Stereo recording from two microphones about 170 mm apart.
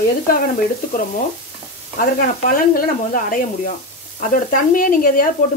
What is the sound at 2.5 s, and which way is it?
Speech, 55° left (ahead or behind).